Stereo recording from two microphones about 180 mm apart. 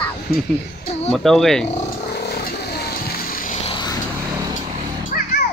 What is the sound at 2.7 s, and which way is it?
Vehicle, 60° left (ahead or behind).